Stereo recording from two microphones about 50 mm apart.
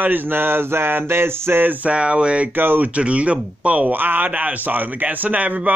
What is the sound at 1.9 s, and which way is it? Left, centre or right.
Speech, right.